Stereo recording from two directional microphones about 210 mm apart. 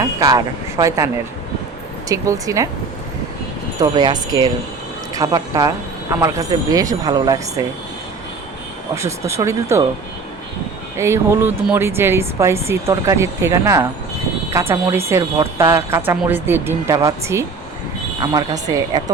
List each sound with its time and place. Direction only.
0.0 s a woman's voice: 15° right (ahead or behind)
3.8 s a woman's voice: 20° right (ahead or behind)
9.0 s a woman's voice: 15° right (ahead or behind)
10.9 s a woman's voice: 15° right (ahead or behind)